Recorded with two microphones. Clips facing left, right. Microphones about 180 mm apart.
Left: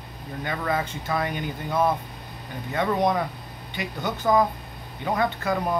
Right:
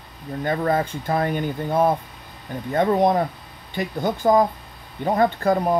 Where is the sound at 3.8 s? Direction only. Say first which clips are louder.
Right 6 dB; 45° right (ahead or behind).